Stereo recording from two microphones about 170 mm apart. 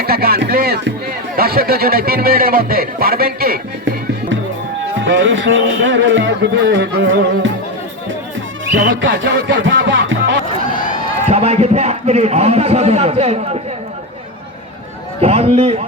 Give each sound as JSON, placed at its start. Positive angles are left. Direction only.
{"t": 0.0, "sound": "music", "side_deg": -65}
{"t": 1.4, "sound": "speech", "side_deg": -65}
{"t": 4.9, "sound": "speech", "side_deg": -90}
{"t": 8.6, "sound": "music", "side_deg": -90}
{"t": 11.3, "sound": "a man's voice", "side_deg": -40}
{"t": 15.2, "sound": "a man's voice", "side_deg": -35}